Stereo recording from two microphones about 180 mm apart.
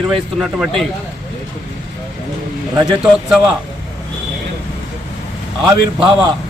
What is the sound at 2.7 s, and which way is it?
Speech, 20° right (ahead or behind).